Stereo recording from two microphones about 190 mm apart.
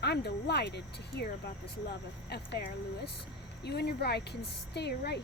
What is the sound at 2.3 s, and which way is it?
Speech, 60° left (ahead or behind).